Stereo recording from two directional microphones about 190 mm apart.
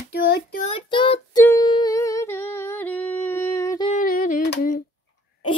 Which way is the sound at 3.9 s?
45° left (ahead or behind).